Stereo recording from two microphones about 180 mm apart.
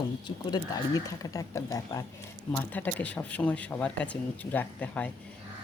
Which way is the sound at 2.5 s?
10° left (ahead or behind).